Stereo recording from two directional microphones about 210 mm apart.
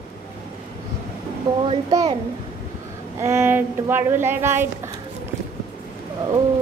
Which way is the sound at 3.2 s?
10° right (ahead or behind).